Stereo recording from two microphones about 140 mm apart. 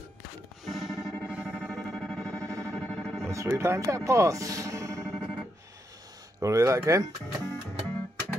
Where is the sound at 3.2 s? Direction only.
20° right (ahead or behind).